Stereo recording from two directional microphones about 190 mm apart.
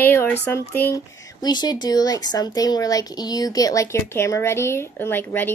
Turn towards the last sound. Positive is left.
turn(degrees=10)  # may be behind; listen again after turning